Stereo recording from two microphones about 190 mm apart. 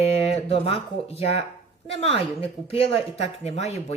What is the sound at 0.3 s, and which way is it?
Speech, 30° left (ahead or behind).